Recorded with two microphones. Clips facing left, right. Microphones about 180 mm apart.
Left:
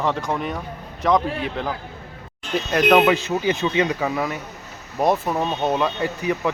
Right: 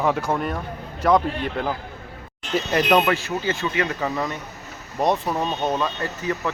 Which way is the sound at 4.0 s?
5° left (ahead or behind).